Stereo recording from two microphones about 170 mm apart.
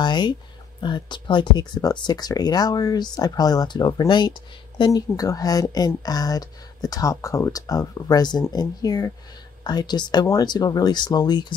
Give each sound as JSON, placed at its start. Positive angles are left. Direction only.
{"t": 0.0, "sound": "speech", "side_deg": 25}